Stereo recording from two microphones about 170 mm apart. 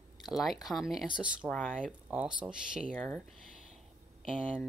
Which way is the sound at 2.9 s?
10° left (ahead or behind).